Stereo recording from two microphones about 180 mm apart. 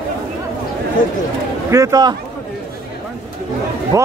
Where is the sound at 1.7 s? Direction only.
20° right (ahead or behind).